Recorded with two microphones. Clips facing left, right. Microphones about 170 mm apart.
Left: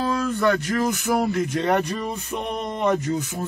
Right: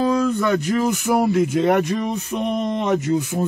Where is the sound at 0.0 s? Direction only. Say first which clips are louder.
Right 3 dB; 15° right (ahead or behind).